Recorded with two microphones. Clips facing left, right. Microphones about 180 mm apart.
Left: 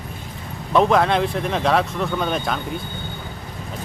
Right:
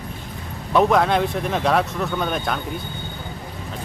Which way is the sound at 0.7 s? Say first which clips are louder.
Even; centre (ahead or behind).